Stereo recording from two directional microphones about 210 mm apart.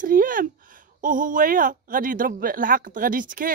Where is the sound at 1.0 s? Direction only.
40° right (ahead or behind).